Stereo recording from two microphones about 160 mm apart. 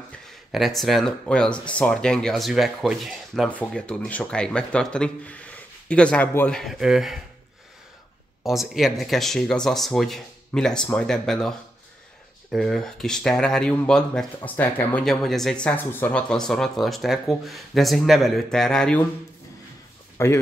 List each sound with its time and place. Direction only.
0.5 s speech: centre (ahead or behind)
8.5 s speech: centre (ahead or behind)
20.2 s speech: 15° left (ahead or behind)